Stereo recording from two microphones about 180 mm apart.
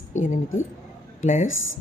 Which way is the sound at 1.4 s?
90° left.